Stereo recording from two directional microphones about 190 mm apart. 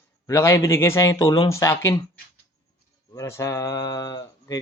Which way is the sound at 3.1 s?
15° left (ahead or behind).